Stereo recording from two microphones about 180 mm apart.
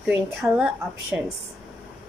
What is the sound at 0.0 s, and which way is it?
A woman's voice, 5° right (ahead or behind).